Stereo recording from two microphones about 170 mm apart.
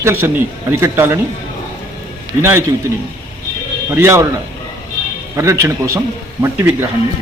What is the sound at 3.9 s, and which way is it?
Speech, 15° right (ahead or behind).